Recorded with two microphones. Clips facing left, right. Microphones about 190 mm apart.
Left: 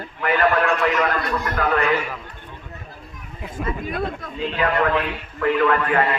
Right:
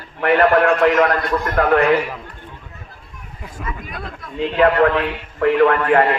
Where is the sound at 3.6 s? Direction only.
30° left (ahead or behind).